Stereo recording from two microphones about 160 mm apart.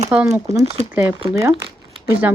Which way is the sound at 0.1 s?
15° right (ahead or behind).